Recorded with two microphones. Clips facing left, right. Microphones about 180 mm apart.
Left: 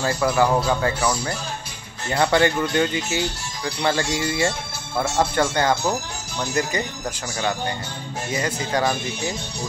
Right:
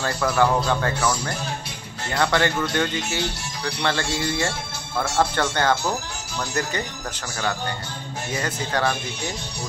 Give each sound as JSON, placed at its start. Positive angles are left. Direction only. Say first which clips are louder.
{"t": 0.0, "sound": "speech", "louder": "left 1 dB", "side_deg": 10}
{"t": 8.4, "sound": "speech", "louder": "left 2 dB", "side_deg": 10}